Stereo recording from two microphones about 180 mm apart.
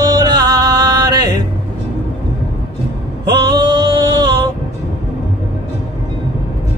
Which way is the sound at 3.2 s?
25° right (ahead or behind).